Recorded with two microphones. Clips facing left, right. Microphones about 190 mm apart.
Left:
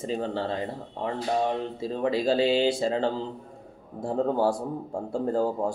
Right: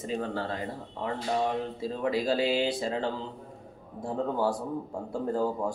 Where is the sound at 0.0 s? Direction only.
30° left (ahead or behind).